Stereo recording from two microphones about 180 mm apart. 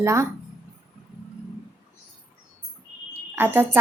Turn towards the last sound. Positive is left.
turn(degrees=-10)  # may be behind; listen again after turning